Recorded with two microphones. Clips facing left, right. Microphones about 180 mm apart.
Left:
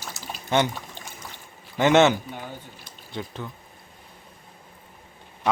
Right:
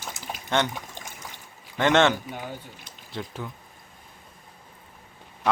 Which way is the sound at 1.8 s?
5° left (ahead or behind).